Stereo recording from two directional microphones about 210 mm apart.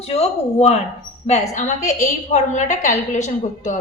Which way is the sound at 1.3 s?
30° left (ahead or behind).